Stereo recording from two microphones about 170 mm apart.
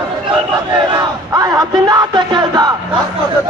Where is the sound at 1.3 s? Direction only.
20° right (ahead or behind).